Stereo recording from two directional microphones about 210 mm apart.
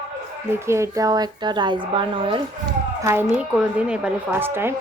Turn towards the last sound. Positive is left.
turn(degrees=-10)  # may be behind; listen again after turning